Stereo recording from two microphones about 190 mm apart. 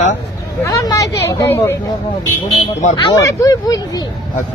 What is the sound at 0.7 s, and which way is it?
Speech, 15° left (ahead or behind).